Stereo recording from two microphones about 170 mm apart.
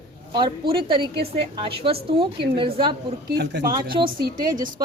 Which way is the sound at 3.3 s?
75° right (ahead or behind).